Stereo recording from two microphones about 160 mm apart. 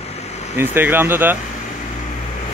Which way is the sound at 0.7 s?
15° right (ahead or behind).